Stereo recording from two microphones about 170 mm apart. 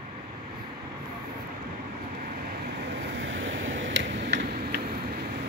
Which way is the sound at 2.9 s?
90° right.